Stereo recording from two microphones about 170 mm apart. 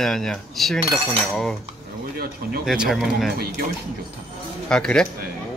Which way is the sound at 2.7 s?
Centre (ahead or behind).